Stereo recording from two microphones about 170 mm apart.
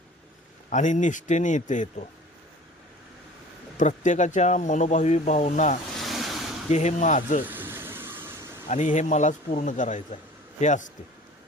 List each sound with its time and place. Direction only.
0.7 s speech: 45° left (ahead or behind)
3.8 s speech: 45° left (ahead or behind)
6.0 s vehicle: centre (ahead or behind)
6.7 s speech: 45° left (ahead or behind)
7.4 s vehicle: 10° right (ahead or behind)
8.7 s speech: 45° left (ahead or behind)